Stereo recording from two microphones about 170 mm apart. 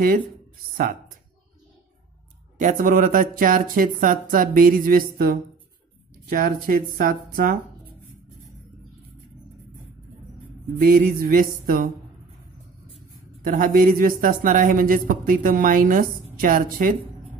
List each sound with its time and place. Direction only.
2.6 s speech: 50° right (ahead or behind)
10.9 s speech: 55° right (ahead or behind)
13.4 s a woman's voice: 55° right (ahead or behind)